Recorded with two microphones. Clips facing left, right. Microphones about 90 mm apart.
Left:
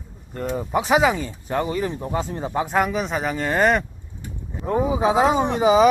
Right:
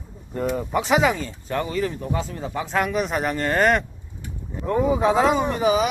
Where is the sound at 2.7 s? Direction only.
5° left (ahead or behind).